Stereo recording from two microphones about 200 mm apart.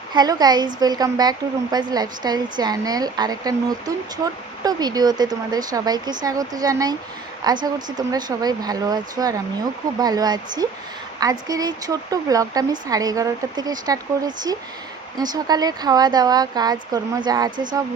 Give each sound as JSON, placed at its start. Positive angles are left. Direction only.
{"t": 0.1, "sound": "a woman's voice", "side_deg": -20}